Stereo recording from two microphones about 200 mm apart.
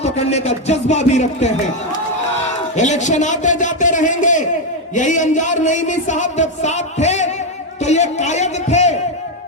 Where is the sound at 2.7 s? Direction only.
35° left (ahead or behind).